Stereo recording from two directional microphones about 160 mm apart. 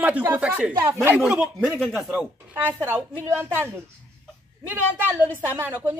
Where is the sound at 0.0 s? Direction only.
10° right (ahead or behind).